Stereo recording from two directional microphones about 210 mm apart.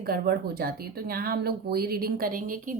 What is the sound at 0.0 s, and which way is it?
Speech, 45° right (ahead or behind).